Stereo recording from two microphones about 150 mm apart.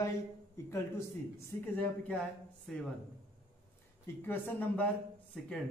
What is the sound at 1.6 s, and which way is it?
A man's voice, 10° left (ahead or behind).